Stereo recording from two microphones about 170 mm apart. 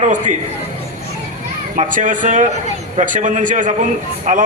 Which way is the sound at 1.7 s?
50° right (ahead or behind).